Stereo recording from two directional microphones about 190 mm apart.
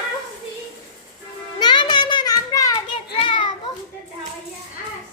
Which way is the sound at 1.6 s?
25° left (ahead or behind).